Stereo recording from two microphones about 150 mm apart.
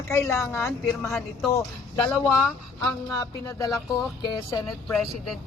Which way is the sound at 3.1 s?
25° left (ahead or behind).